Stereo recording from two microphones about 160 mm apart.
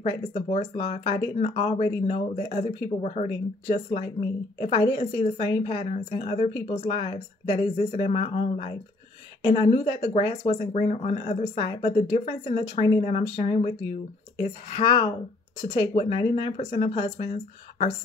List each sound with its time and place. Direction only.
0.0 s speech: 40° left (ahead or behind)